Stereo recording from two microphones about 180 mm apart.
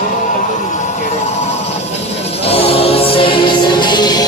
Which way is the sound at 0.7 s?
40° left (ahead or behind).